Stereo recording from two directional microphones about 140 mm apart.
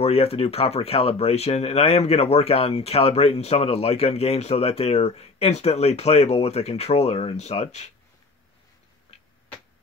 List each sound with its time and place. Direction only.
0.0 s speech: 45° left (ahead or behind)